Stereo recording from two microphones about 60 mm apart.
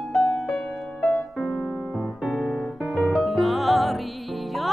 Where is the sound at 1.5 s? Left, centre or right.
Centre.